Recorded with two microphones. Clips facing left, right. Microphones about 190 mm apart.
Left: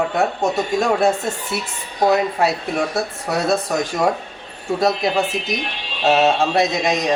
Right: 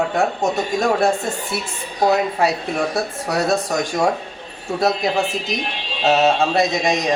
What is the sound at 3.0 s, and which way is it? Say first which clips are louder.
Speech: right 1 dB; centre (ahead or behind).